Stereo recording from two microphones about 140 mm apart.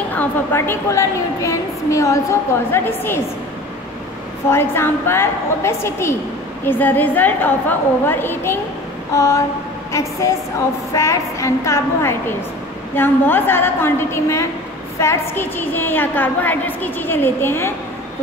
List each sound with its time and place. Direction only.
0.1 s a woman's voice: 15° left (ahead or behind)
4.5 s a woman's voice: 15° left (ahead or behind)
10.9 s a woman's voice: 20° left (ahead or behind)